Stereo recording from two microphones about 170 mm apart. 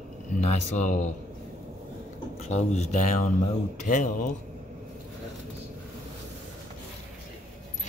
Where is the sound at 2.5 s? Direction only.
45° left (ahead or behind).